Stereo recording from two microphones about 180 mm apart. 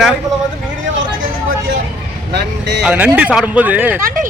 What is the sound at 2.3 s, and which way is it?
Speech, 70° right (ahead or behind).